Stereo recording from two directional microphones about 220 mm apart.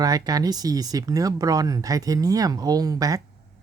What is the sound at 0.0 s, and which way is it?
Speech, 15° right (ahead or behind).